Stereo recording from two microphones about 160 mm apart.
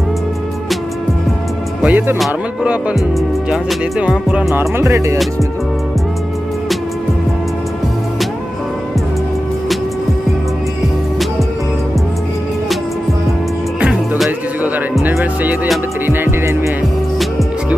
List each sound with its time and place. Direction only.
1.8 s speech: 10° right (ahead or behind)
2.1 s music: 5° right (ahead or behind)
4.0 s music: 5° right (ahead or behind)
13.7 s music: 5° right (ahead or behind)